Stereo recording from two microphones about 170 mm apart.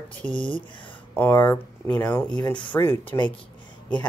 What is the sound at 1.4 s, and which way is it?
Speech, 10° left (ahead or behind).